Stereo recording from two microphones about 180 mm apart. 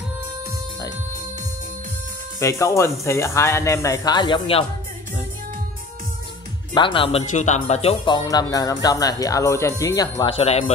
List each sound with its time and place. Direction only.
2.4 s speech: 15° left (ahead or behind)
6.7 s speech: 30° left (ahead or behind)
10.3 s speech: 35° left (ahead or behind)